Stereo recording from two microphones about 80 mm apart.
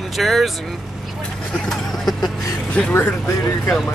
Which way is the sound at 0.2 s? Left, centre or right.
Centre.